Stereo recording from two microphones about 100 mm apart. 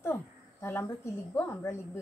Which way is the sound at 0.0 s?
25° left (ahead or behind).